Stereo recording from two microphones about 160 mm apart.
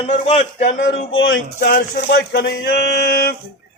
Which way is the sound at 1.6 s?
80° left.